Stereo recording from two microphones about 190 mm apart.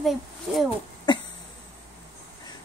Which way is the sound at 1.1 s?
25° left (ahead or behind).